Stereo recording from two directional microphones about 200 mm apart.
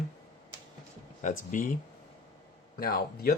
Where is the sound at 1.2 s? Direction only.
40° left (ahead or behind).